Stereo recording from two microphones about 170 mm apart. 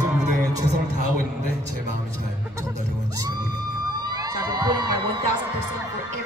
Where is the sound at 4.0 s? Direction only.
20° right (ahead or behind).